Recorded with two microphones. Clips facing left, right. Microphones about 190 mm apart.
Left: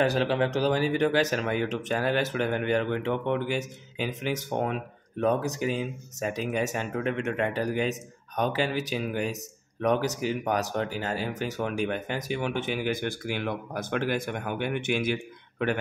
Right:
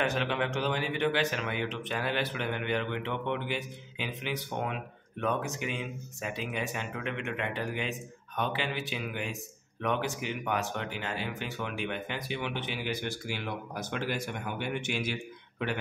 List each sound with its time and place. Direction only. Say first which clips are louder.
0.0 s a man's voice: left 6 dB; 35° left (ahead or behind); by 15.1 s 55° left (ahead or behind)